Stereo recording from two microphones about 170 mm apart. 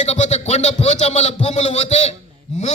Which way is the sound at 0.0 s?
40° left (ahead or behind).